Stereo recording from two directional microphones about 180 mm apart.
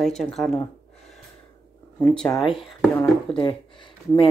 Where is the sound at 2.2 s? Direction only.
20° left (ahead or behind).